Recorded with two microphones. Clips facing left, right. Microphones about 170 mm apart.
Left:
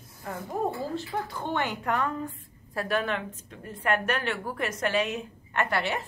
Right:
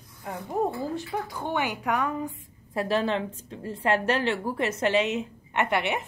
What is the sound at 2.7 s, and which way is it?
A woman's voice, 25° right (ahead or behind).